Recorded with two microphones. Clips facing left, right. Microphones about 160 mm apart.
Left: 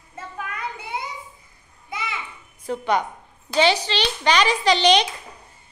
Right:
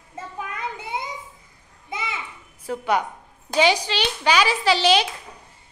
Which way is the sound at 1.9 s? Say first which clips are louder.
Even; 25° right (ahead or behind).